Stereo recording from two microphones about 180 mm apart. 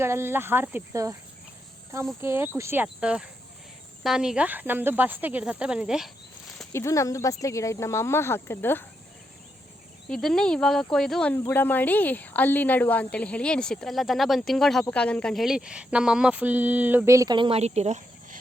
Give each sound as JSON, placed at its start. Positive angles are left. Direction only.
{"t": 0.0, "sound": "speech", "side_deg": -15}
{"t": 2.2, "sound": "speech", "side_deg": -15}
{"t": 6.7, "sound": "speech", "side_deg": 15}
{"t": 10.1, "sound": "a woman's voice", "side_deg": 0}